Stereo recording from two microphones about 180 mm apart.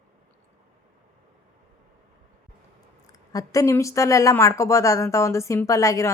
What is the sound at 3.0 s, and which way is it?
Speech, 20° left (ahead or behind).